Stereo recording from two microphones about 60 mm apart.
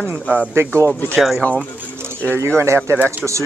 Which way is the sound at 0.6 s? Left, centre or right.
Right.